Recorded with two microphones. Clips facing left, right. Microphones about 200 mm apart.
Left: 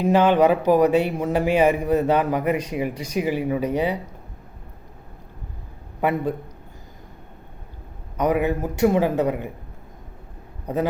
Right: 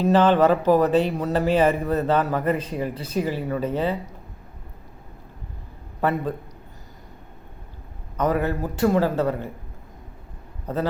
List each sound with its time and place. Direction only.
0.0 s speech: 15° left (ahead or behind)
6.0 s speech: 15° left (ahead or behind)
8.2 s speech: 15° left (ahead or behind)
10.7 s speech: 15° left (ahead or behind)